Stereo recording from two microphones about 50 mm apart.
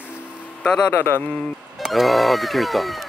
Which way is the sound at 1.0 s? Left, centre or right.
Left.